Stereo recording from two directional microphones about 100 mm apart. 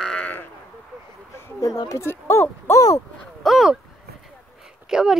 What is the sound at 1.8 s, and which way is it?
Speech, 35° left (ahead or behind).